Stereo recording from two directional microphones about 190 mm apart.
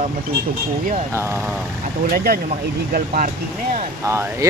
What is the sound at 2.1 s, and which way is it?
Speech, 50° right (ahead or behind).